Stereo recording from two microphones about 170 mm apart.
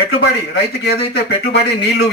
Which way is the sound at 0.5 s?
75° left (ahead or behind).